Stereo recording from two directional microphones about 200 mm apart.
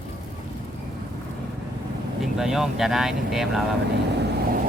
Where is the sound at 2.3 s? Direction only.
Centre (ahead or behind).